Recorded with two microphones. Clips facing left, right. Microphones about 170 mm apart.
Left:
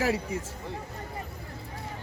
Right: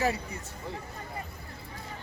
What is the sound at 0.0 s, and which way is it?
Speech, 90° left.